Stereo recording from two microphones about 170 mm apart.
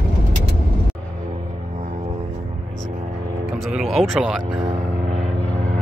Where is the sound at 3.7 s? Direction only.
Centre (ahead or behind).